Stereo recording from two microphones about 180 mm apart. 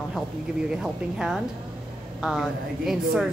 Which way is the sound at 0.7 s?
5° right (ahead or behind).